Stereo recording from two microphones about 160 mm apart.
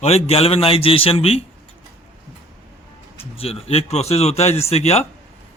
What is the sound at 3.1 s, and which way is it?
A man's voice, 40° left (ahead or behind).